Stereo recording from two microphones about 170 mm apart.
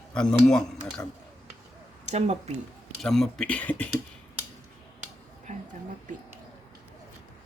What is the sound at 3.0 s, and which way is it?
Speech, centre (ahead or behind).